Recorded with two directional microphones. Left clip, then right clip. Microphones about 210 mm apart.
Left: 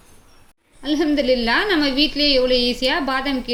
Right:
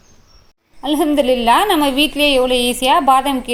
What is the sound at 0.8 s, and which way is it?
A woman's voice, 5° right (ahead or behind).